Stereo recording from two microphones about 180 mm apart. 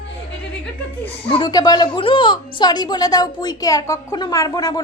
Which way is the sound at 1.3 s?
25° left (ahead or behind).